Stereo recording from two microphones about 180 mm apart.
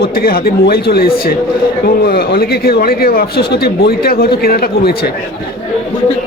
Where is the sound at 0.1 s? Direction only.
55° left (ahead or behind).